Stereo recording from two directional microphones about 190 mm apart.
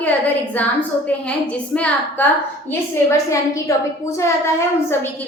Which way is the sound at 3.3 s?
15° left (ahead or behind).